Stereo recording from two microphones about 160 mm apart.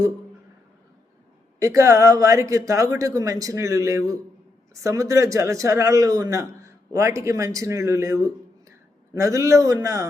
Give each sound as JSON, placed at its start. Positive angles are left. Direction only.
{"t": 1.5, "sound": "speech", "side_deg": -20}